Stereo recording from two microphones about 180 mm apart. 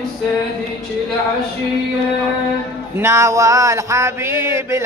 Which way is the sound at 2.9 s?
15° right (ahead or behind).